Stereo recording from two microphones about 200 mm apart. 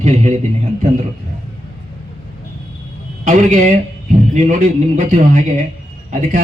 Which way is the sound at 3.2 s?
40° right (ahead or behind).